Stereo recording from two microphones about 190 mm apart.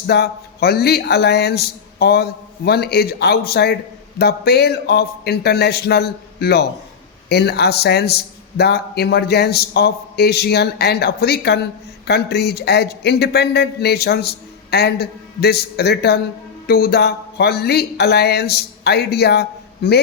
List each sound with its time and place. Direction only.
0.1 s a man's voice: 55° left (ahead or behind)